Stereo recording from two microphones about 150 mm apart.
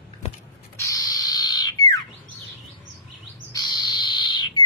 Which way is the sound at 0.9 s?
25° left (ahead or behind).